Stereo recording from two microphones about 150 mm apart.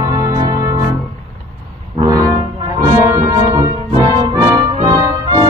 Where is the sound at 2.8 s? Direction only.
20° right (ahead or behind).